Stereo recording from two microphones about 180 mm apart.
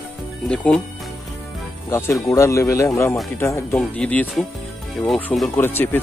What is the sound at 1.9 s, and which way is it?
Speech, 15° left (ahead or behind).